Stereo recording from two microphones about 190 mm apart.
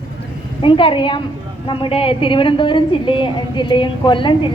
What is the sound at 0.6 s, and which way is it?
A woman's voice, 25° left (ahead or behind).